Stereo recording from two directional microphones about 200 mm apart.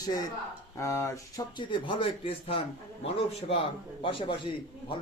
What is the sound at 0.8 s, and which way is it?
Speech, 15° left (ahead or behind).